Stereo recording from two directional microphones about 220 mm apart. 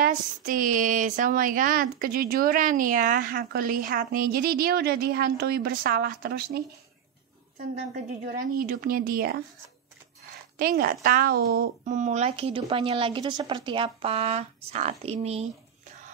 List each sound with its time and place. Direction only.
0.0 s speech: 40° right (ahead or behind)
7.7 s speech: 35° right (ahead or behind)
10.6 s speech: 45° right (ahead or behind)